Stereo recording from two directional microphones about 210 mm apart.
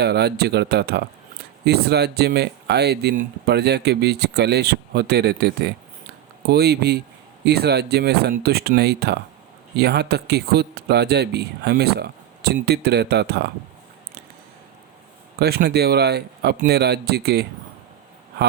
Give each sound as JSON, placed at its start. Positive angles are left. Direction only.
{"t": 0.0, "sound": "speech", "side_deg": -50}
{"t": 15.4, "sound": "speech", "side_deg": -50}